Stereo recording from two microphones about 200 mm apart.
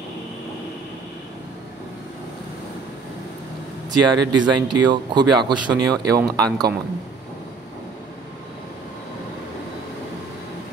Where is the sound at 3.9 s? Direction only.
20° right (ahead or behind).